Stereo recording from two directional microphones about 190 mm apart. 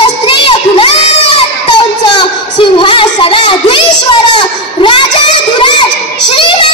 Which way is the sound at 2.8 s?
25° left (ahead or behind).